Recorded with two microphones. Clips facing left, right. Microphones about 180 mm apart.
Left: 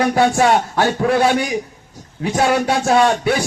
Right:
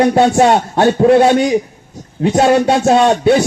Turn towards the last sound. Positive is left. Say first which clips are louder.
# right 5 dB
turn(degrees=-25)  # may be behind; listen again after turning